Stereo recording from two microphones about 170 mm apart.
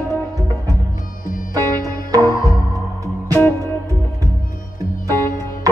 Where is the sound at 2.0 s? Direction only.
20° right (ahead or behind).